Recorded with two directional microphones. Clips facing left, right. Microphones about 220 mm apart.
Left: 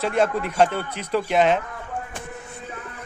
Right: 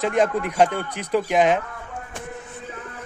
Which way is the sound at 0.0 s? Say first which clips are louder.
Right 1 dB; 15° right (ahead or behind).